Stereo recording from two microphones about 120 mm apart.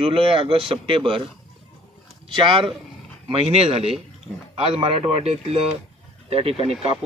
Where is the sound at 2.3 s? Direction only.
40° right (ahead or behind).